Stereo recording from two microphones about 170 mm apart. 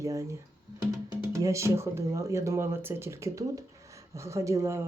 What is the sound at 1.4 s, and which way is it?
Speech, 15° right (ahead or behind).